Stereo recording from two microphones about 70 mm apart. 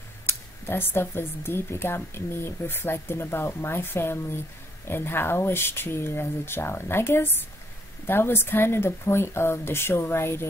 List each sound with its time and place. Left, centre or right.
0.3 s speech: left